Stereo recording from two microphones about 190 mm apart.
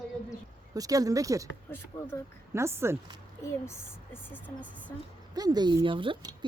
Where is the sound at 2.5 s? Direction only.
15° right (ahead or behind).